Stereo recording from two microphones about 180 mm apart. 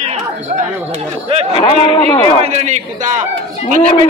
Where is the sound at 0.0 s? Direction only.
40° right (ahead or behind).